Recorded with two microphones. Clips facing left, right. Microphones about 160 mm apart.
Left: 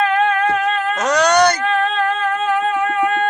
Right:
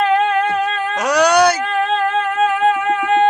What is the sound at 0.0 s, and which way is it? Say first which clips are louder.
Music: right 1 dB; 30° right (ahead or behind).